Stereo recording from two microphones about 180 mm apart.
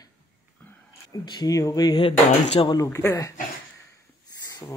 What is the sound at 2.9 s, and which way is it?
Speech, 15° left (ahead or behind).